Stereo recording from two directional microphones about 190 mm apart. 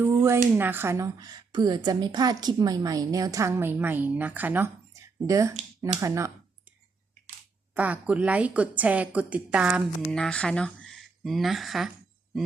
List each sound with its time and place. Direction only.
0.0 s a sound: 15° right (ahead or behind)
0.5 s a woman's voice: 10° right (ahead or behind)
7.7 s a woman's voice: 5° right (ahead or behind)
10.0 s speech: 5° left (ahead or behind)